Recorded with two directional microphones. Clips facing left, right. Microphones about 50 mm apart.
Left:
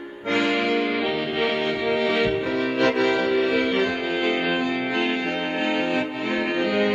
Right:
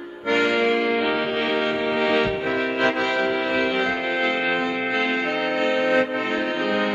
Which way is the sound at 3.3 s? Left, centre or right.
Right.